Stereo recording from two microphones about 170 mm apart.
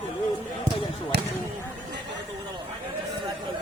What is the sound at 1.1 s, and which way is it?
Speech, 75° right (ahead or behind).